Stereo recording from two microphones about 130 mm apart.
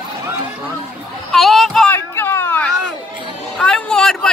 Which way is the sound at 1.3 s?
Centre (ahead or behind).